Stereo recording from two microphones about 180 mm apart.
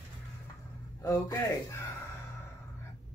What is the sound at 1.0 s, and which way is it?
Speech, 15° left (ahead or behind).